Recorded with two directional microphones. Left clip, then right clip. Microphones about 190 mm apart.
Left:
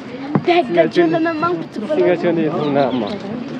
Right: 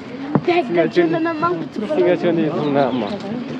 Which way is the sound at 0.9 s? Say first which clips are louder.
Left 2 dB; 35° left (ahead or behind).